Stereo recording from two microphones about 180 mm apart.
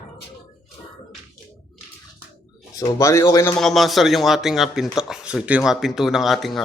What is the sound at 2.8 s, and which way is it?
Speech, 20° left (ahead or behind).